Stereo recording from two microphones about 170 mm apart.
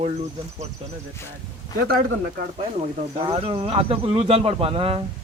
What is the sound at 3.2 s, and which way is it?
Speech, 35° right (ahead or behind).